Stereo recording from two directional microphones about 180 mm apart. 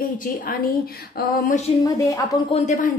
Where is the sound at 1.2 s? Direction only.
55° left (ahead or behind).